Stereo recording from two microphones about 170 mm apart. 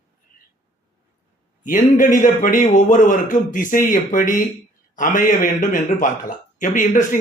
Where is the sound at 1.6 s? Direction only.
50° left (ahead or behind).